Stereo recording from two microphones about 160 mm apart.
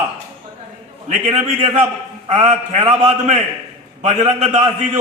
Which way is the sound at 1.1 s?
45° right (ahead or behind).